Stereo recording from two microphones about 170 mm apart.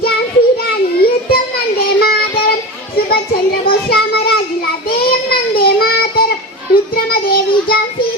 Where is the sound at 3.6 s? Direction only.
65° left (ahead or behind).